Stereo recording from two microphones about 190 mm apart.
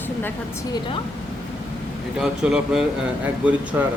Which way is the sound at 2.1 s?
5° right (ahead or behind).